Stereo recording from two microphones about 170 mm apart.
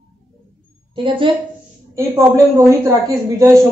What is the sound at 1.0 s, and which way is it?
Speech, 30° right (ahead or behind).